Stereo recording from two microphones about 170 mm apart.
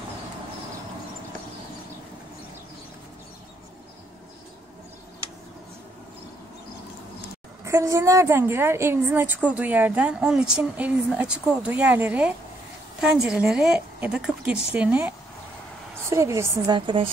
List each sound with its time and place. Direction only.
7.6 s a woman's voice: 20° right (ahead or behind)